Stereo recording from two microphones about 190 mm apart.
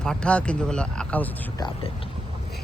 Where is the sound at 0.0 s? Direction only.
5° left (ahead or behind).